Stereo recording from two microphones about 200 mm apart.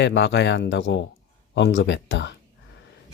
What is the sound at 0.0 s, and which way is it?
Speech, 60° left (ahead or behind).